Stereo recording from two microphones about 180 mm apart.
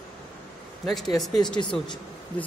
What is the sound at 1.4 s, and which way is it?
Speech, 25° left (ahead or behind).